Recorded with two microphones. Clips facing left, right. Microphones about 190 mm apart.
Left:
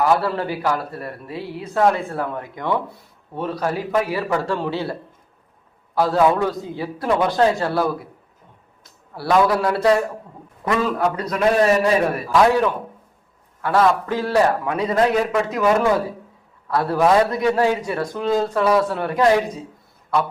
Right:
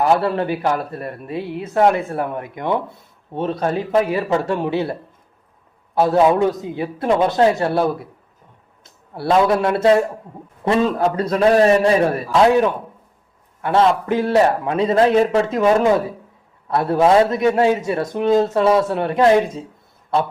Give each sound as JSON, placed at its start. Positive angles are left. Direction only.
{"t": 0.0, "sound": "a man's voice", "side_deg": -25}